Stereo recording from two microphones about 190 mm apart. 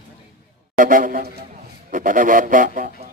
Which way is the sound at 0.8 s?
45° right (ahead or behind).